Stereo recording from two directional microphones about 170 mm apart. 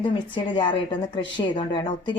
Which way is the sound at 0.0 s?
30° left (ahead or behind).